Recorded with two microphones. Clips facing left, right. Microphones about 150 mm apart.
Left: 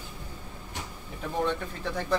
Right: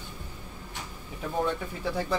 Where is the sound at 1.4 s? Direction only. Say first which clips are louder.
Even; 10° right (ahead or behind).